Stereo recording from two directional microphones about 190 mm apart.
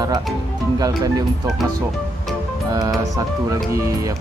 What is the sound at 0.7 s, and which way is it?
Speech, 20° right (ahead or behind).